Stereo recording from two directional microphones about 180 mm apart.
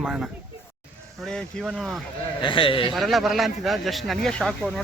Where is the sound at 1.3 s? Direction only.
5° left (ahead or behind).